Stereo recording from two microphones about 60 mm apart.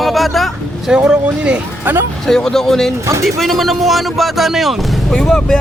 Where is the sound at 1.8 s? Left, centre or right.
Right.